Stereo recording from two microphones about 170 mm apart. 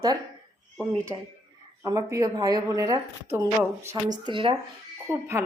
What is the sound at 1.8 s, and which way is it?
Speech, 20° right (ahead or behind).